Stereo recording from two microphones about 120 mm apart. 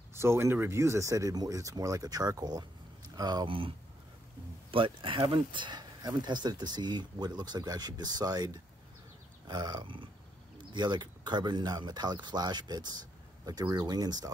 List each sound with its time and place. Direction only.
0.1 s speech: 20° right (ahead or behind)
3.4 s speech: 45° right (ahead or behind); by 14.3 s 30° right (ahead or behind)